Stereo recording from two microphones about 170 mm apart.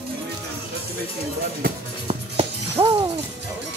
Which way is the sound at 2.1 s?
35° right (ahead or behind).